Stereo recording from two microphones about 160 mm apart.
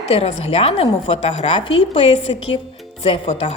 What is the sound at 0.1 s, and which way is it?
A woman's voice, 40° left (ahead or behind).